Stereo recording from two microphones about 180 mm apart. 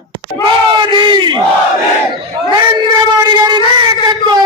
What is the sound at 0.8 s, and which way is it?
Battle cry, 25° right (ahead or behind).